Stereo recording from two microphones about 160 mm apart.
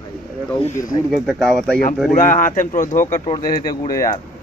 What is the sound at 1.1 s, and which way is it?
Speech, centre (ahead or behind).